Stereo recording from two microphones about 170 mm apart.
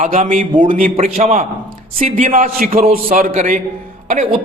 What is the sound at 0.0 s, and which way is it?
A man's voice, 50° right (ahead or behind).